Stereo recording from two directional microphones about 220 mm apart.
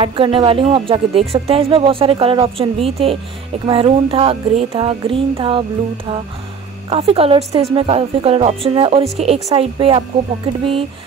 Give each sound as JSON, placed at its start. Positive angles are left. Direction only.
{"t": 0.0, "sound": "a woman's voice", "side_deg": -25}
{"t": 6.9, "sound": "a woman's voice", "side_deg": -25}